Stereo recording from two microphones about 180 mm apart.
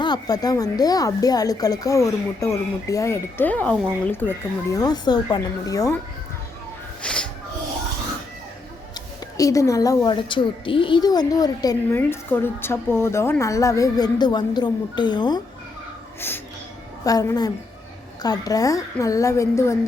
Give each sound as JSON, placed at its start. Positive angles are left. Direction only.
{"t": 0.0, "sound": "a woman's voice", "side_deg": 20}
{"t": 7.0, "sound": "music", "side_deg": 5}
{"t": 9.4, "sound": "a woman's voice", "side_deg": 20}
{"t": 17.0, "sound": "a woman's voice", "side_deg": 20}